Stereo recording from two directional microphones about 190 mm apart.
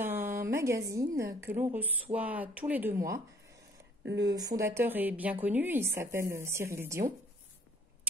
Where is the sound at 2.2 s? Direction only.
10° right (ahead or behind).